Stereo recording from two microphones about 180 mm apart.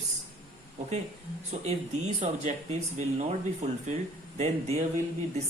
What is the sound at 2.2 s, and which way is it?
Speech, 40° right (ahead or behind).